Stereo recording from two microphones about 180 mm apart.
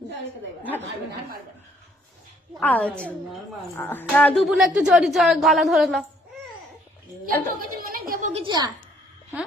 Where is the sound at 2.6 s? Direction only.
10° left (ahead or behind).